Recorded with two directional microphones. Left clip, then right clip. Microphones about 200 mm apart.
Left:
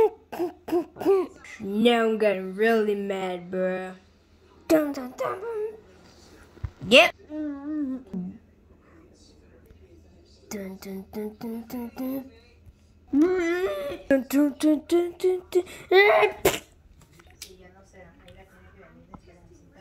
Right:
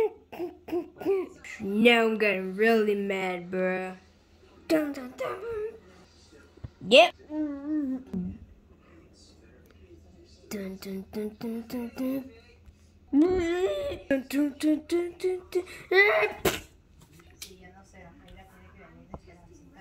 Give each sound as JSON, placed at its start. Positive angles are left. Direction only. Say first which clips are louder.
{"t": 0.0, "sound": "cough", "louder": "left 6 dB", "side_deg": 5}
{"t": 1.4, "sound": "speech", "louder": "even", "side_deg": -5}
{"t": 4.7, "sound": "humming", "louder": "left 4 dB", "side_deg": 10}
{"t": 6.9, "sound": "a woman's voice", "louder": "left 1 dB", "side_deg": 5}
{"t": 10.5, "sound": "speech", "louder": "left 1 dB", "side_deg": -5}
{"t": 14.2, "sound": "humming", "louder": "left 5 dB", "side_deg": 15}